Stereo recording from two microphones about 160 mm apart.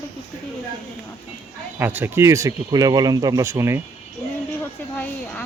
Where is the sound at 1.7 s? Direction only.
15° right (ahead or behind).